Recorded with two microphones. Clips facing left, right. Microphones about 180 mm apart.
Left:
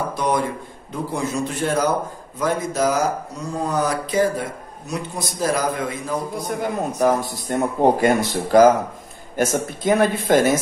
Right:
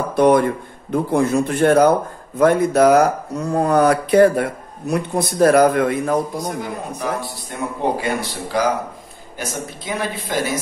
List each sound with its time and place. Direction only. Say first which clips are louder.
0.1 s a man's voice: right 8 dB; 60° right (ahead or behind)
6.6 s a man's voice: left 6 dB; 45° left (ahead or behind)